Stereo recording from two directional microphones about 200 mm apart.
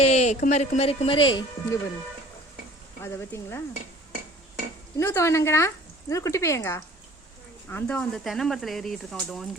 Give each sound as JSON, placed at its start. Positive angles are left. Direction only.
{"t": 0.0, "sound": "speech", "side_deg": 35}
{"t": 3.0, "sound": "speech", "side_deg": 15}
{"t": 4.9, "sound": "speech", "side_deg": 15}